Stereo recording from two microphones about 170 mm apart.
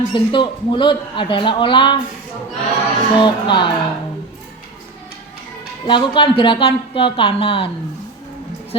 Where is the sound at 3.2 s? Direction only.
30° left (ahead or behind).